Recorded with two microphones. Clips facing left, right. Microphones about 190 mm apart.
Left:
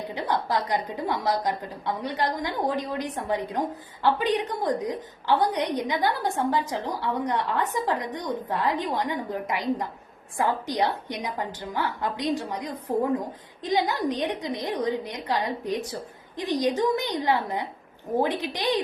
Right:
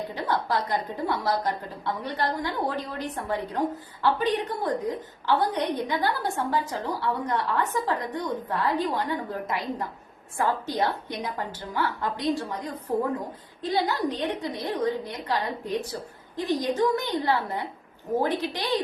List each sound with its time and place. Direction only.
0.1 s a woman's voice: 15° left (ahead or behind)